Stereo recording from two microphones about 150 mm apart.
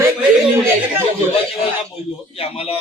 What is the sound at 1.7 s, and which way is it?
Speech, 40° left (ahead or behind).